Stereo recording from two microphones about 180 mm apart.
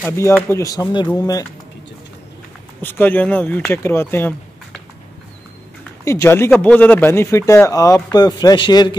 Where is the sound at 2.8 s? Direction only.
10° left (ahead or behind).